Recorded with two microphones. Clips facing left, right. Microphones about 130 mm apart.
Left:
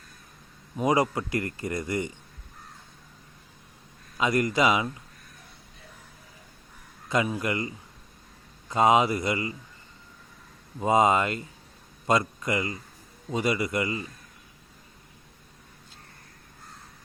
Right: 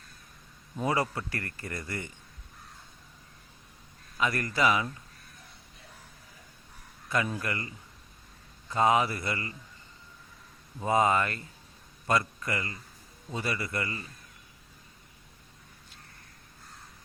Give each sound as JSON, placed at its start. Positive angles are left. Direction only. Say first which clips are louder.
{"t": 0.8, "sound": "speech", "louder": "left 5 dB", "side_deg": 15}
{"t": 4.2, "sound": "speech", "louder": "left 4 dB", "side_deg": 20}
{"t": 7.1, "sound": "speech", "louder": "left 4 dB", "side_deg": 20}
{"t": 8.7, "sound": "speech", "louder": "left 4 dB", "side_deg": 20}
{"t": 10.8, "sound": "speech", "louder": "left 4 dB", "side_deg": 20}